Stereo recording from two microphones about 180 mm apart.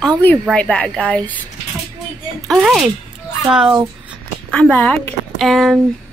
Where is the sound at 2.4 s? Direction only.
Centre (ahead or behind).